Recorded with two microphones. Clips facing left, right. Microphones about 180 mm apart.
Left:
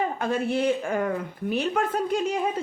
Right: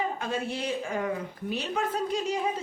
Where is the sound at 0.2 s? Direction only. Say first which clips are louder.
Left 7 dB; 55° left (ahead or behind).